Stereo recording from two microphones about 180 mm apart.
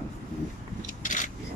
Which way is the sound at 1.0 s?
45° left (ahead or behind).